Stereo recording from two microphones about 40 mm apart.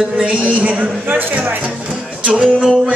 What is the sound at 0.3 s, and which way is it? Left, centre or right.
Music, right.